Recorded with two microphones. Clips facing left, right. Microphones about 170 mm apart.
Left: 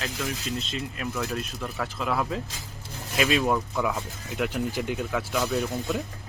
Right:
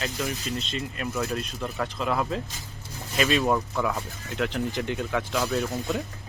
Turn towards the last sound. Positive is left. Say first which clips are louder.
# even
turn(degrees=0)  # may be behind; listen again after turning